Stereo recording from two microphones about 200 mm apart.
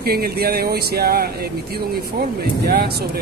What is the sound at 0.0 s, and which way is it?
Speech, 50° right (ahead or behind).